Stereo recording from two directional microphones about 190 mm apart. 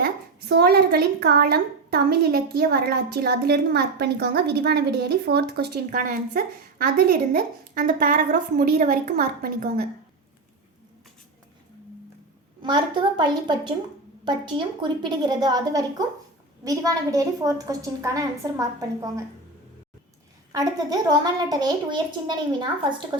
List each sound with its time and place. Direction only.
0.0 s a woman's voice: 55° right (ahead or behind)
12.6 s a woman's voice: 25° right (ahead or behind)
20.5 s a woman's voice: 20° right (ahead or behind)